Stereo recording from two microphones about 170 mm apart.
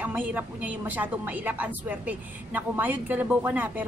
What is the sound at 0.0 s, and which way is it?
A woman's voice, 10° right (ahead or behind).